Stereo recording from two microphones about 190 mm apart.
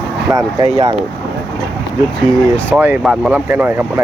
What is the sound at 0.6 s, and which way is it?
Speech, 25° right (ahead or behind).